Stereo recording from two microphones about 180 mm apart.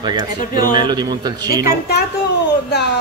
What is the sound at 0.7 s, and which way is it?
A man's voice, 25° right (ahead or behind).